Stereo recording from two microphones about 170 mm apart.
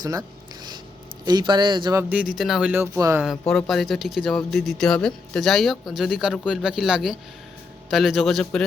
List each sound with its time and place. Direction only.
0.0 s speech: 20° right (ahead or behind); by 2.8 s 5° right (ahead or behind)
2.8 s speech: 15° right (ahead or behind)
3.5 s speech: centre (ahead or behind)